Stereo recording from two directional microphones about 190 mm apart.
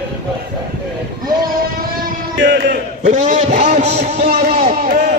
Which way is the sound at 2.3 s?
75° right (ahead or behind).